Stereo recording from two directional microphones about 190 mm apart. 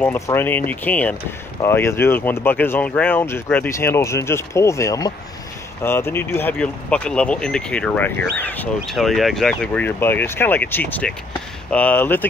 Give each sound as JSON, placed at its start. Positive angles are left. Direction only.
{"t": 0.0, "sound": "speech", "side_deg": 10}